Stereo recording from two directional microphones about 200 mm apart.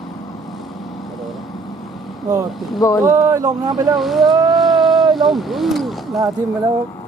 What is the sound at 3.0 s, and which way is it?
Speech, 15° right (ahead or behind).